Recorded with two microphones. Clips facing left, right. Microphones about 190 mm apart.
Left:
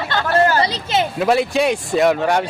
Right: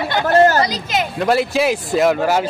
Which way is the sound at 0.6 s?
30° left (ahead or behind).